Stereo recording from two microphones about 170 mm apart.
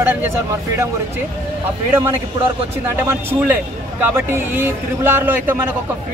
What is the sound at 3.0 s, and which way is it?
A man's voice, 10° right (ahead or behind).